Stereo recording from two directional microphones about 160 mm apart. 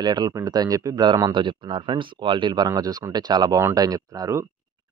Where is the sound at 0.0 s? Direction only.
25° right (ahead or behind).